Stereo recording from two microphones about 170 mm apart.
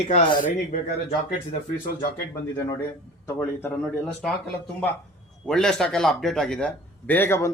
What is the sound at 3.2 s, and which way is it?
Speech, 15° left (ahead or behind).